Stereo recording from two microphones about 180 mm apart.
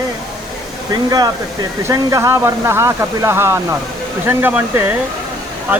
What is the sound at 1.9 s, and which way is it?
Speech, 15° right (ahead or behind).